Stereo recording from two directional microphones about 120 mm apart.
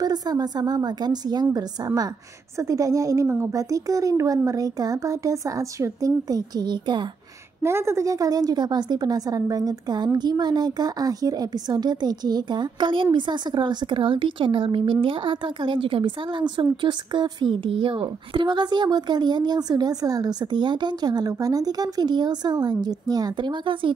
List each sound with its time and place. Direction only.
0.0 s a woman's voice: 35° right (ahead or behind)
7.6 s a woman's voice: 20° right (ahead or behind); by 23.9 s 45° right (ahead or behind)